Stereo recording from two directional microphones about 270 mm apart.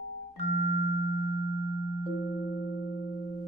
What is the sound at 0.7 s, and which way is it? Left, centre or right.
Tuning fork, left.